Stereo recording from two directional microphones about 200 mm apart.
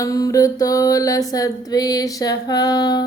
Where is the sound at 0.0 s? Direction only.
15° left (ahead or behind).